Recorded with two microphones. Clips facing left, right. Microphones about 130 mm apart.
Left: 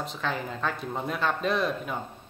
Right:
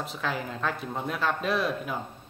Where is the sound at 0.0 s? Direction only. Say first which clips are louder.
Even; 5° right (ahead or behind).